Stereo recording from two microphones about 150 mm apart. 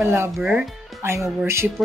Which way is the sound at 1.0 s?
15° right (ahead or behind).